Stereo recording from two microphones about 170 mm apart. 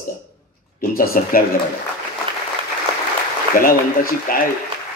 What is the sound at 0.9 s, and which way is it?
Speech, 60° left (ahead or behind).